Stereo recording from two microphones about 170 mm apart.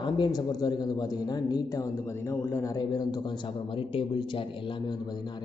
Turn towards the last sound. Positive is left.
turn(degrees=30)  # may be behind; listen again after turning